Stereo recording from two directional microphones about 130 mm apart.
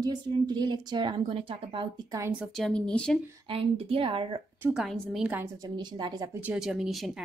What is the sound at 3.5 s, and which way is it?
Speech, 45° right (ahead or behind).